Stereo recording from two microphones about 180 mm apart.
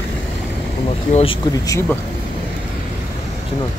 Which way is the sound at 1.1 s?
35° left (ahead or behind).